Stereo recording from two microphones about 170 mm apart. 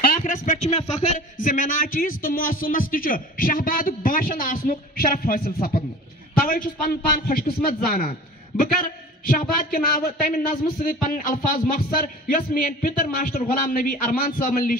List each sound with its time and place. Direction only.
0.0 s a man's voice: 50° left (ahead or behind)